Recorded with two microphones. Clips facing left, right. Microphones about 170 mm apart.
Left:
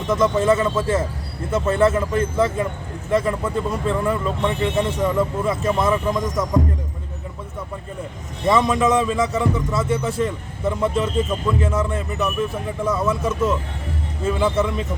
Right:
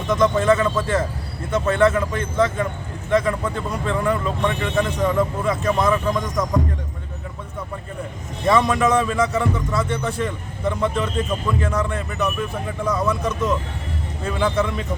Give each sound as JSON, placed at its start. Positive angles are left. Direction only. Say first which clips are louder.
{"t": 0.1, "sound": "a man's voice", "louder": "even", "side_deg": 5}
{"t": 4.4, "sound": "speech", "louder": "left 1 dB", "side_deg": 25}
{"t": 4.9, "sound": "a man's voice", "louder": "even", "side_deg": 5}
{"t": 5.8, "sound": "speech", "louder": "even", "side_deg": 25}
{"t": 6.1, "sound": "a man's voice", "louder": "left 1 dB", "side_deg": 5}
{"t": 8.6, "sound": "a man's voice", "louder": "left 1 dB", "side_deg": 0}